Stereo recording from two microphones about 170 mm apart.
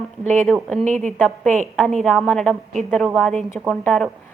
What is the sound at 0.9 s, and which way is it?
Speech, 45° right (ahead or behind).